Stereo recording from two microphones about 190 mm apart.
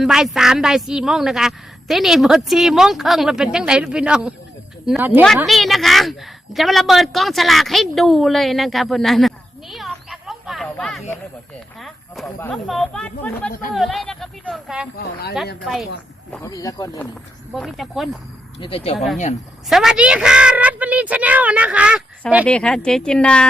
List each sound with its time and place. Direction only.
0.0 s a woman's voice: centre (ahead or behind)
13.5 s speech: 45° left (ahead or behind)
13.7 s a woman's voice: centre (ahead or behind)
14.9 s speech: 55° left (ahead or behind)
15.6 s a woman's voice: centre (ahead or behind)
16.3 s speech: 15° left (ahead or behind)
17.5 s a woman's voice: centre (ahead or behind)
18.6 s speech: 30° left (ahead or behind)
18.9 s a woman's voice: centre (ahead or behind)